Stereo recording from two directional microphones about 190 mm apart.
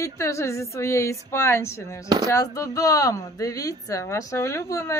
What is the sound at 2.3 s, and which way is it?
Speech, 15° left (ahead or behind).